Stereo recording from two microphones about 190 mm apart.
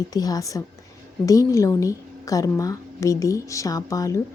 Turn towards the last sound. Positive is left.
turn(degrees=15)  # may be behind; listen again after turning